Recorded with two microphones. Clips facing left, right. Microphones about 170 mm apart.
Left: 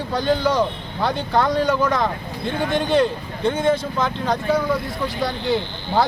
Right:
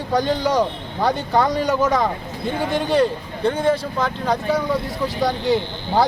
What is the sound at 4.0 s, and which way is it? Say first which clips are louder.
A man's voice: even; 10° right (ahead or behind).